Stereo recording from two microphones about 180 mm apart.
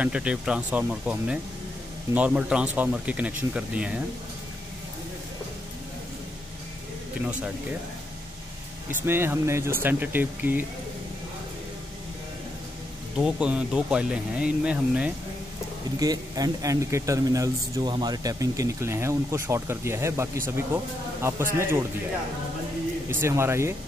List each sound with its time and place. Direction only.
0.0 s speech: 5° right (ahead or behind)
9.0 s speech: 15° right (ahead or behind)
13.2 s speech: 5° right (ahead or behind)
16.0 s speech: 20° right (ahead or behind)
23.0 s speech: 15° right (ahead or behind)